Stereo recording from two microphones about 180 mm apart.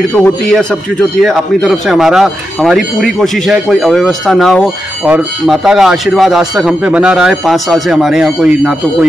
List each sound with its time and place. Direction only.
0.2 s speech: 5° left (ahead or behind)